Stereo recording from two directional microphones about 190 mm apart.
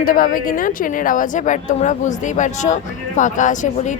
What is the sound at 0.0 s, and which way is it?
A woman's voice, 50° left (ahead or behind).